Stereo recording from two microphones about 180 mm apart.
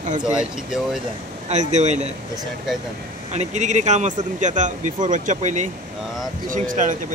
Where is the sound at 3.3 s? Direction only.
40° right (ahead or behind).